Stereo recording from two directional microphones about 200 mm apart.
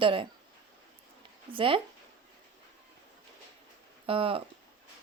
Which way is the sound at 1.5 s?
25° right (ahead or behind).